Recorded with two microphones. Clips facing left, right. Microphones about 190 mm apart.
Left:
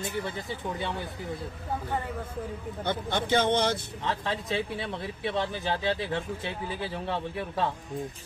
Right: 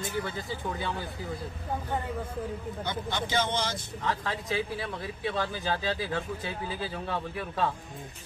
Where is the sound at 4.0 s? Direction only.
25° left (ahead or behind).